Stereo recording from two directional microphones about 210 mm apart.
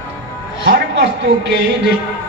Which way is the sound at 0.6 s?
50° right (ahead or behind).